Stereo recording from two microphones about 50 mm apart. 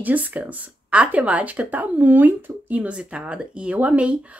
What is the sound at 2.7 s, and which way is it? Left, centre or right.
Speech, right.